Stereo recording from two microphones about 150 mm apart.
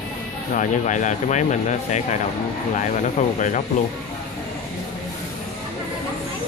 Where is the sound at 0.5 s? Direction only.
55° left (ahead or behind).